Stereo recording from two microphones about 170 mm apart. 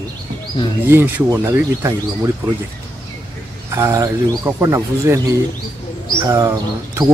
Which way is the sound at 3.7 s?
20° right (ahead or behind).